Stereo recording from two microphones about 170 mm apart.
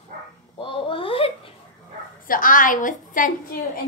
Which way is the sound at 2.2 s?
55° left (ahead or behind).